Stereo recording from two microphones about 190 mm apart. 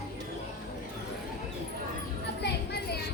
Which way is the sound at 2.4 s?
60° left (ahead or behind).